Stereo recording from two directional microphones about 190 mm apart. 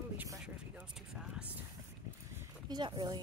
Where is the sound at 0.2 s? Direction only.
10° right (ahead or behind).